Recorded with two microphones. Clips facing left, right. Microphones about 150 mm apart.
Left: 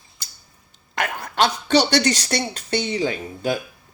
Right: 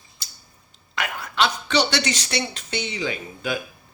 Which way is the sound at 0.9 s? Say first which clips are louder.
Left 3 dB; 45° left (ahead or behind).